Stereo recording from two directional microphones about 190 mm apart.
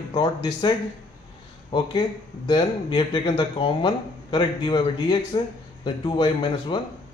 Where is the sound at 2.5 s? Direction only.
25° left (ahead or behind).